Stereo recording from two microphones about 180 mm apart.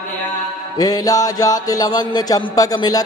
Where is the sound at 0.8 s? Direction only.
20° left (ahead or behind).